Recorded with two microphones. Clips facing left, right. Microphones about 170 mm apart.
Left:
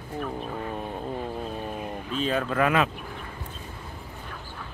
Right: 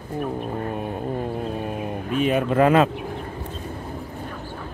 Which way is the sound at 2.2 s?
15° right (ahead or behind).